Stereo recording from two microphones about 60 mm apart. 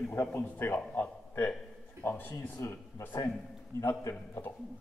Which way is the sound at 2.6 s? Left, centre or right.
Left.